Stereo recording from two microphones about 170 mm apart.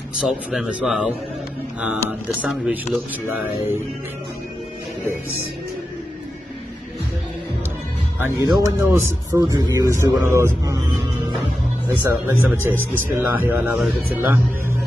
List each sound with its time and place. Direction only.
0.2 s a man's voice: 5° right (ahead or behind)
8.2 s a man's voice: 15° right (ahead or behind)